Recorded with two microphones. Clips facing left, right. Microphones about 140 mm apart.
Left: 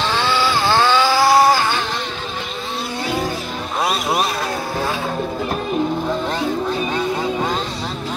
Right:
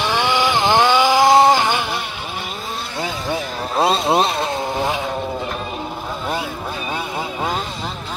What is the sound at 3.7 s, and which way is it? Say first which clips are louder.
Vehicle: right 4 dB; 25° right (ahead or behind).